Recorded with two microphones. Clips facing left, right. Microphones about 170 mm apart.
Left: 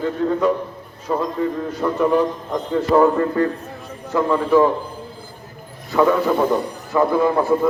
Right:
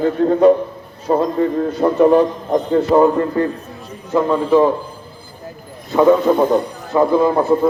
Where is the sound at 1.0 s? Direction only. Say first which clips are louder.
Right 5 dB; 35° right (ahead or behind).